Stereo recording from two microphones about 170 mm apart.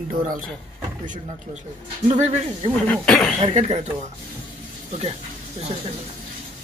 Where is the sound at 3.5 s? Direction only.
45° right (ahead or behind).